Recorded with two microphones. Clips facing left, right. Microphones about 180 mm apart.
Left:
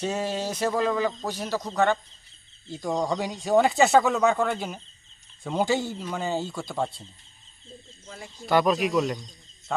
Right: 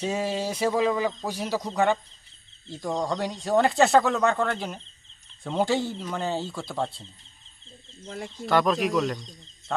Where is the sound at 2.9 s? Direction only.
5° left (ahead or behind).